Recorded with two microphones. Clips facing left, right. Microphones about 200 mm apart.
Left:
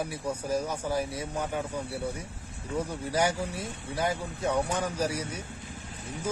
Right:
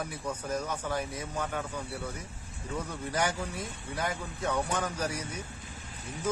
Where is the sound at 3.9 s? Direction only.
30° left (ahead or behind).